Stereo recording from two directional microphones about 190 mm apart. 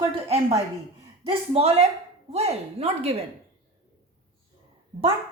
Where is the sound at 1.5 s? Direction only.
30° right (ahead or behind).